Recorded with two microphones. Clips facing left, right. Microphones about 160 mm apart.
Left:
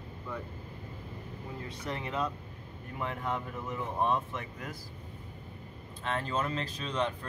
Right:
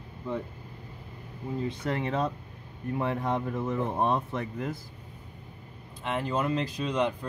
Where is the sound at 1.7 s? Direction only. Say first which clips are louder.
Right 4 dB; 30° right (ahead or behind).